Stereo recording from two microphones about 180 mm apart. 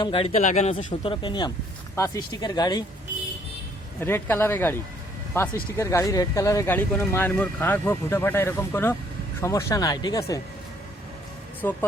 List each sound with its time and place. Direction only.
0.0 s speech: 30° left (ahead or behind)
0.9 s speech: 30° left (ahead or behind)
4.0 s speech: 10° left (ahead or behind)
11.6 s speech: 15° left (ahead or behind)